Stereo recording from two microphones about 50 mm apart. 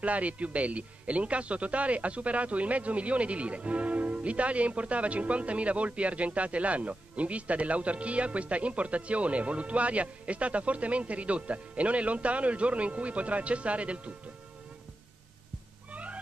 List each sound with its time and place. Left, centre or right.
0.0 s speech: right
15.9 s whale vocalization: right